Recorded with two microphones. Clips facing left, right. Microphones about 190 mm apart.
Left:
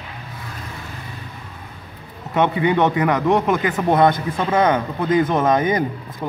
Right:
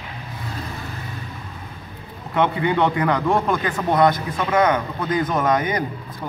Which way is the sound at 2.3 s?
20° left (ahead or behind).